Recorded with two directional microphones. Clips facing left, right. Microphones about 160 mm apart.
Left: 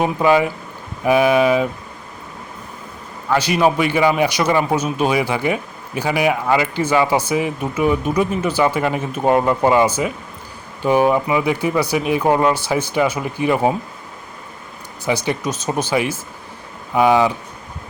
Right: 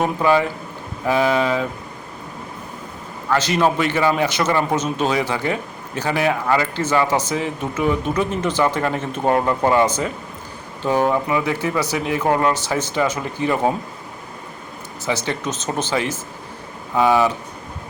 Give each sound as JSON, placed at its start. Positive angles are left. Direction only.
{"t": 0.0, "sound": "a man's voice", "side_deg": 15}
{"t": 3.2, "sound": "a man's voice", "side_deg": 10}
{"t": 15.0, "sound": "a man's voice", "side_deg": 15}